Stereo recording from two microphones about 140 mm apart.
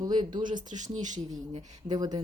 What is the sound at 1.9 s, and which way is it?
Speech, 30° right (ahead or behind).